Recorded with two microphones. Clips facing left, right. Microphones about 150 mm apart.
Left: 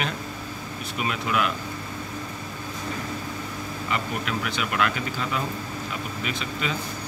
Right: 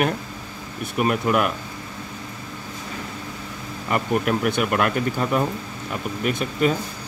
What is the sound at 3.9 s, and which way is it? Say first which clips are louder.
Speech: right 8 dB; 50° right (ahead or behind).